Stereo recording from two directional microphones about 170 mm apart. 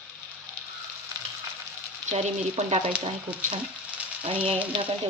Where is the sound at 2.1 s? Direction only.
40° right (ahead or behind).